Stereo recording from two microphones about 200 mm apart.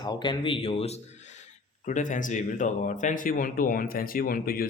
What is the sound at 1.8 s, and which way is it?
Speech, 40° left (ahead or behind).